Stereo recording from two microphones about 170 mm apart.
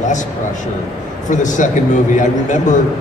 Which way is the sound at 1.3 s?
45° left (ahead or behind).